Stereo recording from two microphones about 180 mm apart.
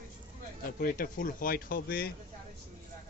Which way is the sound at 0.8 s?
50° left (ahead or behind).